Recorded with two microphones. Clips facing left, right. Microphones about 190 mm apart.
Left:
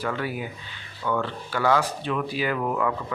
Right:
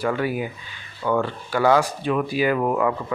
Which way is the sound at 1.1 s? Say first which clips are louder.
Right 4 dB; 45° right (ahead or behind).